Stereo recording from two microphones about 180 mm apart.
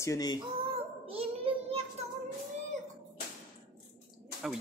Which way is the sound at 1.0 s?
30° right (ahead or behind).